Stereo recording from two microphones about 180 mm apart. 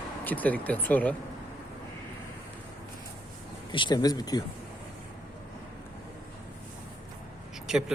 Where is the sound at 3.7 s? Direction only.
25° left (ahead or behind).